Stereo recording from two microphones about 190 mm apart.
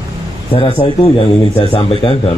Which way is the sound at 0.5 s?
30° left (ahead or behind).